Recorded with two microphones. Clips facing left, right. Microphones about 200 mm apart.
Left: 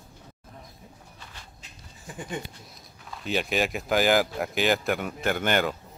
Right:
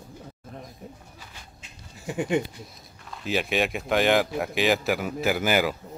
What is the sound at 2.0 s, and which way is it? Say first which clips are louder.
Speech: right 10 dB; 75° right (ahead or behind).